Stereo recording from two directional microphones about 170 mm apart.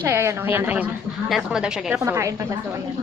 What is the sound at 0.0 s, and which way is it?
A woman's voice, 15° right (ahead or behind).